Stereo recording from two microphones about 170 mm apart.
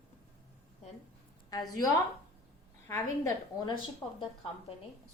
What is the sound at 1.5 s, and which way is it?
A woman's voice, 20° left (ahead or behind).